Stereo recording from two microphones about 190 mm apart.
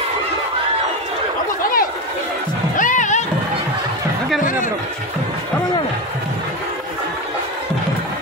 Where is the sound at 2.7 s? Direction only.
40° left (ahead or behind).